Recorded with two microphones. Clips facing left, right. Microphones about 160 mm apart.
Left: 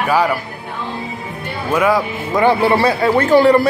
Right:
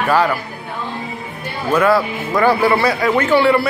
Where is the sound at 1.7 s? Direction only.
15° left (ahead or behind).